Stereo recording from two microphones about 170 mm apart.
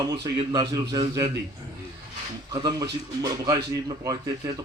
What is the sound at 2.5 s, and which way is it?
A man's voice, 20° right (ahead or behind).